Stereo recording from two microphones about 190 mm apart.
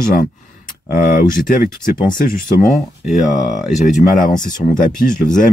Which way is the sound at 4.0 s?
45° left (ahead or behind).